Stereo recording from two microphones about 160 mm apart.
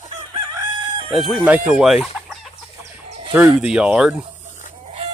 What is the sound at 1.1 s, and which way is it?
Chicken, centre (ahead or behind).